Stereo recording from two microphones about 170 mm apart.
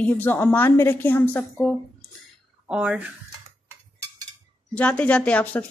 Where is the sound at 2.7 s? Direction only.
5° right (ahead or behind).